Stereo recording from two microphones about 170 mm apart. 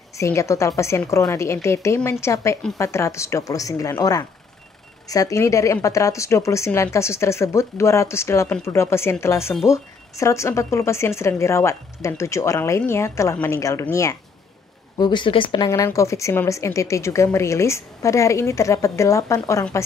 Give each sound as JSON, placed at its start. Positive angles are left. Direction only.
{"t": 0.1, "sound": "a woman's voice", "side_deg": 15}
{"t": 15.0, "sound": "speech", "side_deg": 25}